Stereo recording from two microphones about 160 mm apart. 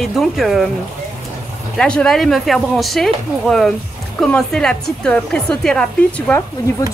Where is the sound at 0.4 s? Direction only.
Centre (ahead or behind).